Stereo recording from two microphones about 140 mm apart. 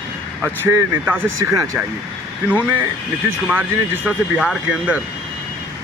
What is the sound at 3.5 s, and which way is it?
Speech, 10° right (ahead or behind).